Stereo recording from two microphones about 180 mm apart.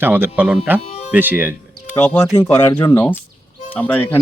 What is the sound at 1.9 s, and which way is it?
Speech, 10° left (ahead or behind).